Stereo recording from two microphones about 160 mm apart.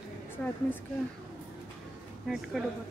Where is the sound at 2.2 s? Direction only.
Centre (ahead or behind).